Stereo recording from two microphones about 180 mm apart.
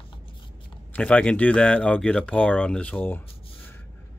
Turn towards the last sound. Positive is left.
turn(degrees=10)  # may be behind; listen again after turning